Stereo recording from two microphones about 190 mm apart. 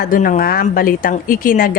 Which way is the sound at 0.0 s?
45° left (ahead or behind).